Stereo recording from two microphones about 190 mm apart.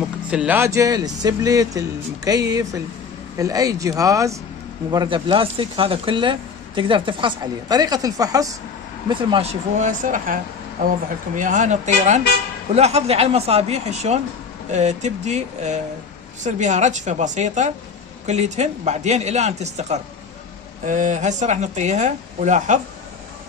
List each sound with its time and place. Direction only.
0.3 s speech: 5° right (ahead or behind)
9.3 s speech: 35° right (ahead or behind)